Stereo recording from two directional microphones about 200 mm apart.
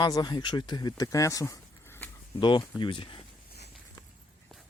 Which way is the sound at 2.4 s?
25° left (ahead or behind).